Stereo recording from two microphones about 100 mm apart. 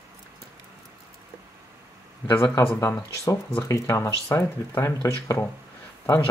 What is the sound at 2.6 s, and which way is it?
Speech, 30° left (ahead or behind).